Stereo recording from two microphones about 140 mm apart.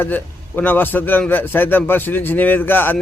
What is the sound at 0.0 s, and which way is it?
A man's voice, 15° left (ahead or behind).